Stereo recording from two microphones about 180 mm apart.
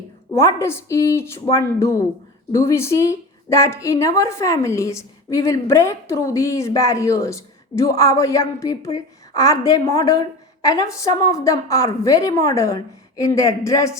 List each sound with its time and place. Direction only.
0.3 s a woman's voice: 15° left (ahead or behind)